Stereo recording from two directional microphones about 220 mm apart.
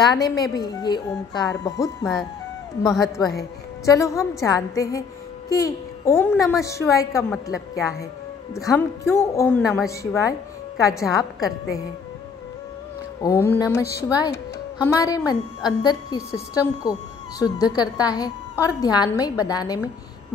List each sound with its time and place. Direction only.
0.1 s a woman's voice: 20° left (ahead or behind)
3.0 s a woman's voice: 15° left (ahead or behind)
9.6 s a woman's voice: centre (ahead or behind)
9.8 s a woman's voice: 15° left (ahead or behind)
13.2 s a woman's voice: 10° left (ahead or behind)